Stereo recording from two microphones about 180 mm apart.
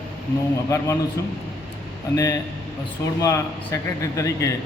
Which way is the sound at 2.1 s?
20° left (ahead or behind).